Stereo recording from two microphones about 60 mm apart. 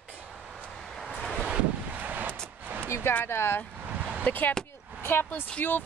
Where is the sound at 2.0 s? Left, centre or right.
Right.